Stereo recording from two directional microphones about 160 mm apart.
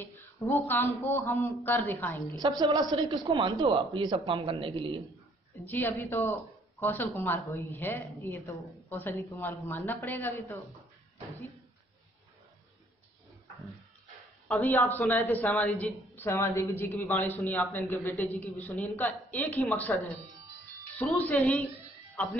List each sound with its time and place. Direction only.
0.0 s speech: 15° left (ahead or behind)
2.3 s speech: 25° right (ahead or behind)
5.5 s speech: 10° left (ahead or behind)
14.5 s speech: 10° left (ahead or behind)